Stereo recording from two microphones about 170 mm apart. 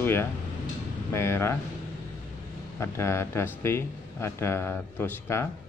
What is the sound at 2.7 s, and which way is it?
Speech, 15° left (ahead or behind).